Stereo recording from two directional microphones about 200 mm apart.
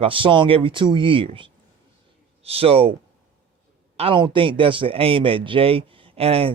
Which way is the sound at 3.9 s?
25° right (ahead or behind).